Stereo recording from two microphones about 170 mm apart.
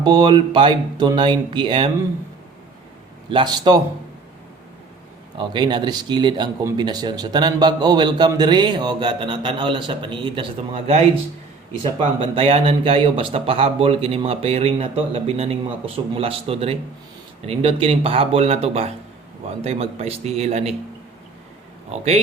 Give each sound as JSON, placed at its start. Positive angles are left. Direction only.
{"t": 0.0, "sound": "a man's voice", "side_deg": -25}
{"t": 3.2, "sound": "a man's voice", "side_deg": -25}
{"t": 5.4, "sound": "a man's voice", "side_deg": -25}